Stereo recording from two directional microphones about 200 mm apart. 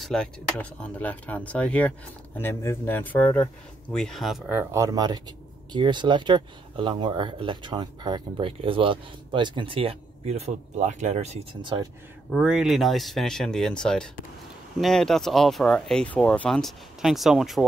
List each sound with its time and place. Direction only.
0.0 s speech: 5° left (ahead or behind); by 11.9 s 25° right (ahead or behind)
12.3 s speech: centre (ahead or behind)